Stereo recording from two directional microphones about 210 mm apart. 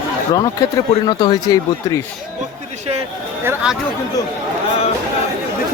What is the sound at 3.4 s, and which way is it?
Speech, 5° right (ahead or behind).